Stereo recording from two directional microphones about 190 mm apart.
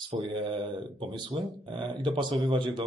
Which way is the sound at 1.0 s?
25° right (ahead or behind).